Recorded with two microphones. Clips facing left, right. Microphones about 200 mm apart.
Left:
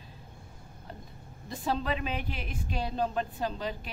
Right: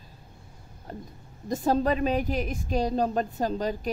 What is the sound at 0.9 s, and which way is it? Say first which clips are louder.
A woman's voice: right 7 dB; 45° right (ahead or behind).